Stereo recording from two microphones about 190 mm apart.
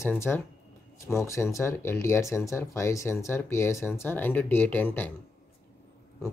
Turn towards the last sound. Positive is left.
turn(degrees=10)  # may be behind; listen again after turning